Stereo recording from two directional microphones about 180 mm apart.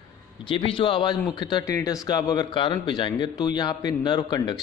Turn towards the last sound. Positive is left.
turn(degrees=25)  # may be behind; listen again after turning